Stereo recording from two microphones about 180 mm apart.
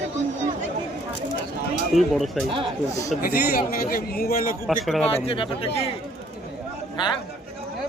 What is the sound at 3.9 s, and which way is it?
Speech, 55° left (ahead or behind).